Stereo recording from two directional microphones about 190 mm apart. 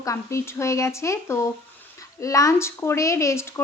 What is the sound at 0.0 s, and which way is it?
Speech, 15° left (ahead or behind).